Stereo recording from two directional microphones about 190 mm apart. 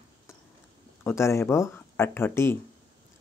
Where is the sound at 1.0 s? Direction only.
15° left (ahead or behind).